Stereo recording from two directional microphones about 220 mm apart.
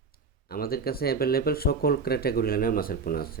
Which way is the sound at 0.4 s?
45° left (ahead or behind).